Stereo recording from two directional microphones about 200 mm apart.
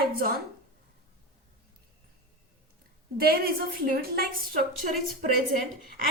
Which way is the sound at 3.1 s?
50° right (ahead or behind).